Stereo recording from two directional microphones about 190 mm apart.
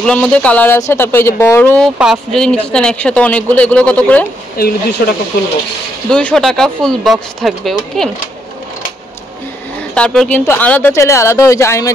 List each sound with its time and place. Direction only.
0.0 s speech: 5° left (ahead or behind)
4.6 s speech: 55° left (ahead or behind)
6.0 s speech: 5° left (ahead or behind)
9.9 s speech: 5° left (ahead or behind)